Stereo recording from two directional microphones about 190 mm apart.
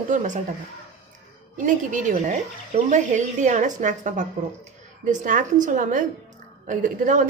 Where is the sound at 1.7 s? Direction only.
40° right (ahead or behind).